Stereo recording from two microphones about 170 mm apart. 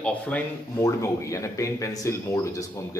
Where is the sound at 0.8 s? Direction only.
20° left (ahead or behind).